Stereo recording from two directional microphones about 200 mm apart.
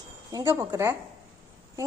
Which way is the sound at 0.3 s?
15° right (ahead or behind).